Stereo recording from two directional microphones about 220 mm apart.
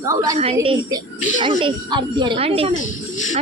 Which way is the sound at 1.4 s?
25° right (ahead or behind).